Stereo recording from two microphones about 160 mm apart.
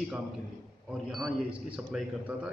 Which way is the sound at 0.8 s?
5° right (ahead or behind).